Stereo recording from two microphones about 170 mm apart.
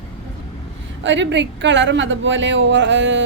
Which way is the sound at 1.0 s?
90° right.